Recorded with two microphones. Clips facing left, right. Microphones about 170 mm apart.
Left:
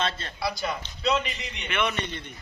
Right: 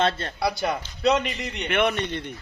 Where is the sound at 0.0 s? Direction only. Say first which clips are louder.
Right 6 dB; 55° right (ahead or behind).